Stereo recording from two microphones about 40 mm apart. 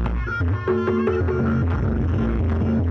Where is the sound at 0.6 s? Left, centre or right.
Centre.